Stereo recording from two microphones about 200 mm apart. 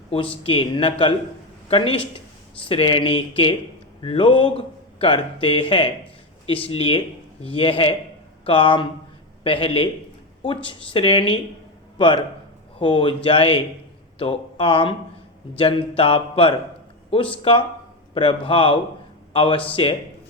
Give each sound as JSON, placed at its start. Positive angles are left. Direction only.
{"t": 0.1, "sound": "a man's voice", "side_deg": 30}